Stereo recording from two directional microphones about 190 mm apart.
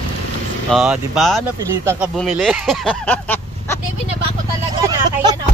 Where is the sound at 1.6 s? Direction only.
15° right (ahead or behind).